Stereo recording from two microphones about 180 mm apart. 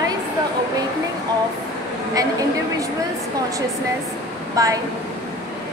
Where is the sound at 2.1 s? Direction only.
20° right (ahead or behind).